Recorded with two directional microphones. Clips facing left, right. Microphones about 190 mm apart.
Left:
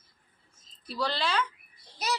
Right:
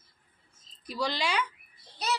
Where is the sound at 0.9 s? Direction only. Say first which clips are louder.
Even; 10° right (ahead or behind).